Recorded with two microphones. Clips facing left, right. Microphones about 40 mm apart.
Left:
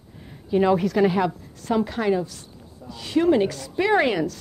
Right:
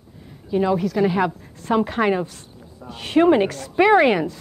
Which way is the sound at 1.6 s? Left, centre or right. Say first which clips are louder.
Right 4 dB; right.